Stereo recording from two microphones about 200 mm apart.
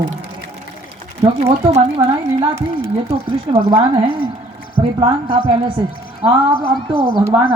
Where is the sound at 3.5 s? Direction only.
20° right (ahead or behind).